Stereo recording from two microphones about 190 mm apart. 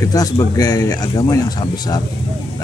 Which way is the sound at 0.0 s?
20° left (ahead or behind).